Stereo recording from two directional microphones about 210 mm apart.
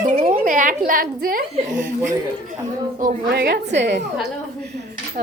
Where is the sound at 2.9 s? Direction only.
45° right (ahead or behind).